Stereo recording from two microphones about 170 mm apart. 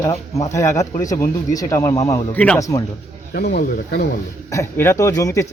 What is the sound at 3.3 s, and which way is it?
Speech, 65° left (ahead or behind).